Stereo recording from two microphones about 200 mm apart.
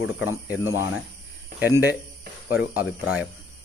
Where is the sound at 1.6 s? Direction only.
10° right (ahead or behind).